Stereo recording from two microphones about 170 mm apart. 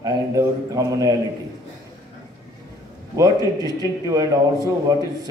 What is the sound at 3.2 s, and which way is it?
A man's voice, 20° right (ahead or behind).